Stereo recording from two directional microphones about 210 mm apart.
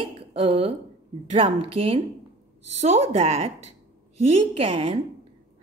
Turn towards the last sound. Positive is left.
turn(degrees=-25)  # may be behind; listen again after turning